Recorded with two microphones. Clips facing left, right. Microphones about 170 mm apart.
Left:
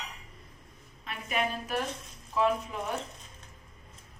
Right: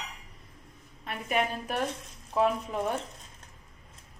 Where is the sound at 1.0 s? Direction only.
50° right (ahead or behind).